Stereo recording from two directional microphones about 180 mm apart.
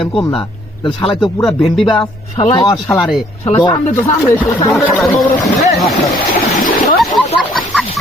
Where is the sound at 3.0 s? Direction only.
Centre (ahead or behind).